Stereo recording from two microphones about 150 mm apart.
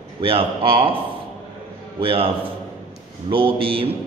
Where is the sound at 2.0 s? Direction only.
35° right (ahead or behind).